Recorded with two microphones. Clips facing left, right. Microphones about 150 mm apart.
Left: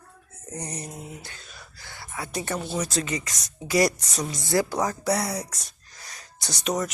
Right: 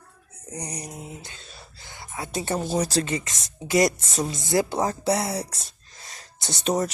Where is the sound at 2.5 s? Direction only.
40° right (ahead or behind).